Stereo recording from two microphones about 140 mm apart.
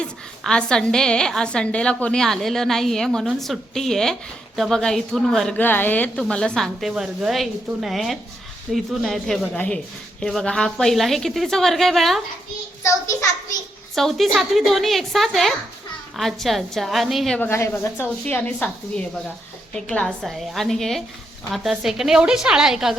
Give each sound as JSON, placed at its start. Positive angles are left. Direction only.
{"t": 0.0, "sound": "a woman's voice", "side_deg": 5}
{"t": 12.8, "sound": "a child's voice", "side_deg": 20}
{"t": 13.9, "sound": "a woman's voice", "side_deg": 0}
{"t": 17.4, "sound": "a woman's voice", "side_deg": 15}